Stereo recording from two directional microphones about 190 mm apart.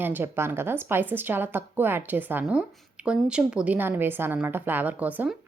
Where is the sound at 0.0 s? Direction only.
10° right (ahead or behind).